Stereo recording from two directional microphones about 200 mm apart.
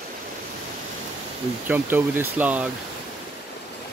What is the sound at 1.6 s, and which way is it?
Speech, 10° right (ahead or behind).